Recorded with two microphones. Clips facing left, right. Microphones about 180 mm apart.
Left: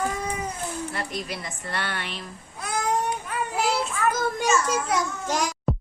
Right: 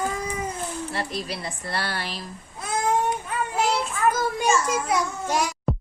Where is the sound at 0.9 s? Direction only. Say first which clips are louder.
Right 2 dB; 30° right (ahead or behind).